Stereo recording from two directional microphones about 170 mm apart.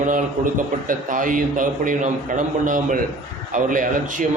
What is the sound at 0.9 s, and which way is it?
A man's voice, 50° right (ahead or behind).